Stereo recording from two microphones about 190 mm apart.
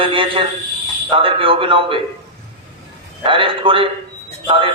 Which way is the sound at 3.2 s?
25° right (ahead or behind).